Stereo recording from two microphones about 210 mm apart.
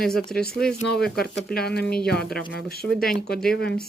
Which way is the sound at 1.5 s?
50° left (ahead or behind).